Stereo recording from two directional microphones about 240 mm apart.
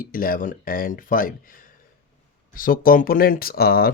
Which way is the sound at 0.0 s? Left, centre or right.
Left.